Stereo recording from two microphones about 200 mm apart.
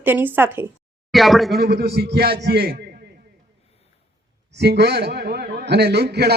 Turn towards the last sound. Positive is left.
turn(degrees=-55)  # may be behind; listen again after turning